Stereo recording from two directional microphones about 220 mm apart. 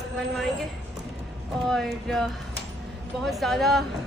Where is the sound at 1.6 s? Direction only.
Centre (ahead or behind).